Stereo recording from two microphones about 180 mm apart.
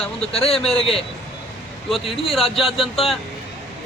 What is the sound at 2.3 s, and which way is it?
Speech, centre (ahead or behind).